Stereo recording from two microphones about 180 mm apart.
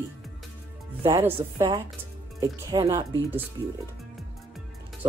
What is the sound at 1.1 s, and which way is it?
A woman's voice, 15° right (ahead or behind).